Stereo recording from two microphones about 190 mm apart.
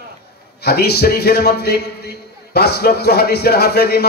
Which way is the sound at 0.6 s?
55° left (ahead or behind).